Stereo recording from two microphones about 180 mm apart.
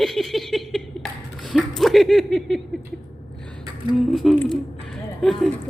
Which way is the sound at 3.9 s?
Centre (ahead or behind).